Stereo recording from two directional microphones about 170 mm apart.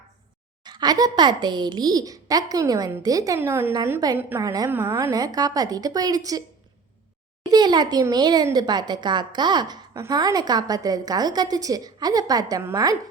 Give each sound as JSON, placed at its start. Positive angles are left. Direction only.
{"t": 0.6, "sound": "a woman's voice", "side_deg": -25}
{"t": 7.5, "sound": "a woman's voice", "side_deg": -25}